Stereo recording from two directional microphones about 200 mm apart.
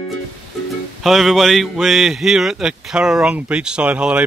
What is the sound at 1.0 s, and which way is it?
A man's voice, centre (ahead or behind).